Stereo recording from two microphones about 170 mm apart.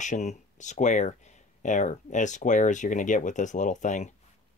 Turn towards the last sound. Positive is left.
turn(degrees=45)  # may be behind; listen again after turning